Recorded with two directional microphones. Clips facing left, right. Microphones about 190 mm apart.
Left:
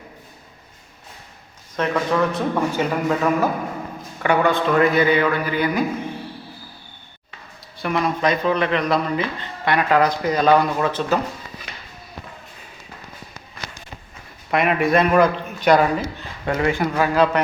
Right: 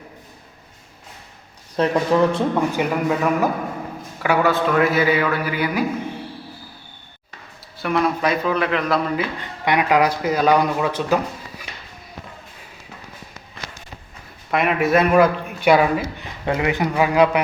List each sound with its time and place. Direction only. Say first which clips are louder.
1.7 s a man's voice: right 3 dB; 30° right (ahead or behind); by 5.8 s 10° right (ahead or behind)
7.8 s a man's voice: right 1 dB; centre (ahead or behind)
9.4 s speech: right 1 dB; 15° right (ahead or behind)
14.5 s a man's voice: even; centre (ahead or behind)
16.5 s speech: even; 20° right (ahead or behind)